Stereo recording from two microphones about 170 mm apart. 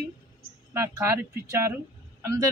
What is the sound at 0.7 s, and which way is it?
A man's voice, 15° right (ahead or behind).